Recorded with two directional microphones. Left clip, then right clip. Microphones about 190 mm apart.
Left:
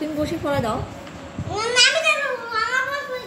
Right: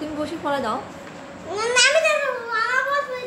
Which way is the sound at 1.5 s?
50° right (ahead or behind).